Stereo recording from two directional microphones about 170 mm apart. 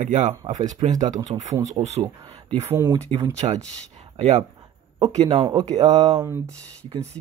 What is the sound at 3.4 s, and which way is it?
Speech, 30° right (ahead or behind).